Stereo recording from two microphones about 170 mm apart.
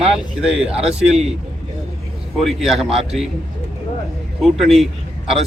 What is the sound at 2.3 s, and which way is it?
Speech, centre (ahead or behind).